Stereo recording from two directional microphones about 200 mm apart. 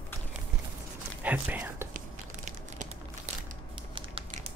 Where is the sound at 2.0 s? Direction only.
35° right (ahead or behind).